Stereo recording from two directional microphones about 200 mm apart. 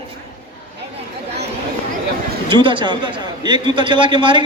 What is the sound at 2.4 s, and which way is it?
Speech, 25° right (ahead or behind).